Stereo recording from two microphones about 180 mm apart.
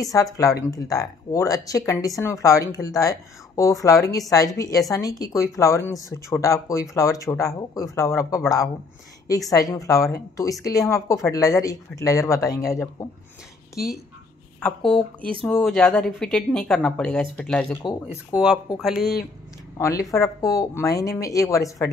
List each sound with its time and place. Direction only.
0.1 s speech: 20° left (ahead or behind)
14.6 s a woman's voice: 5° left (ahead or behind)
18.0 s a woman's voice: 5° right (ahead or behind)
19.8 s speech: 20° left (ahead or behind)